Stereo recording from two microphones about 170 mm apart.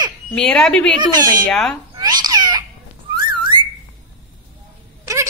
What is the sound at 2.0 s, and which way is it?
Babbling, 25° right (ahead or behind).